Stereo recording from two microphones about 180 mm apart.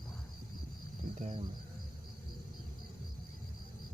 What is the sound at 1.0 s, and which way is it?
Speech, 45° right (ahead or behind).